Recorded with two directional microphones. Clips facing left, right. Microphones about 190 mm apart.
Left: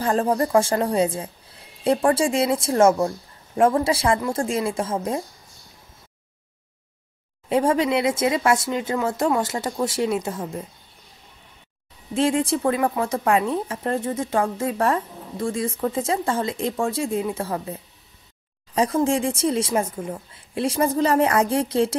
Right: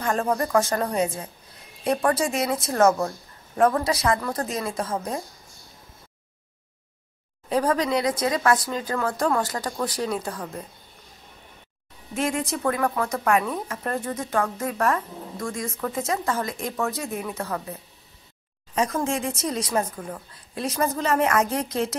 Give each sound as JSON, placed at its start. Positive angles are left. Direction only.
{"t": 0.0, "sound": "speech", "side_deg": 30}
{"t": 7.4, "sound": "speech", "side_deg": 25}
{"t": 12.1, "sound": "speech", "side_deg": 30}
{"t": 18.8, "sound": "speech", "side_deg": 30}